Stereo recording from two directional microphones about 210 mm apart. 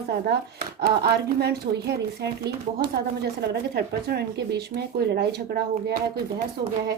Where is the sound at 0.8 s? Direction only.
50° right (ahead or behind).